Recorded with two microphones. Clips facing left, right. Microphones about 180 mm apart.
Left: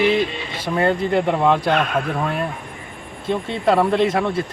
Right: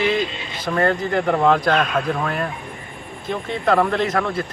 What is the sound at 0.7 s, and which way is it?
Speech, 15° left (ahead or behind).